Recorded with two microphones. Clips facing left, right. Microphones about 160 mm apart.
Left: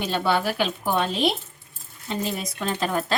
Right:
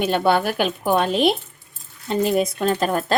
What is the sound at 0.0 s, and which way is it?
Speech, 55° right (ahead or behind).